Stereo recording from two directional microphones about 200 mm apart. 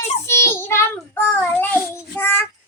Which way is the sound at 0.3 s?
15° left (ahead or behind).